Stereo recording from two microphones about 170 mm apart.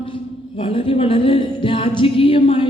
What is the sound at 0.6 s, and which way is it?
A man's voice, 30° left (ahead or behind).